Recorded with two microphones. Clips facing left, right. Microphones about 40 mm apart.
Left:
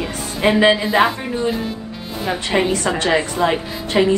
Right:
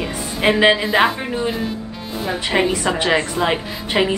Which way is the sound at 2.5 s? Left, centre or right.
Centre.